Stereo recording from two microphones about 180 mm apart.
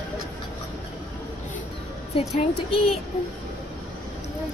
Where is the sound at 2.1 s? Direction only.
35° left (ahead or behind).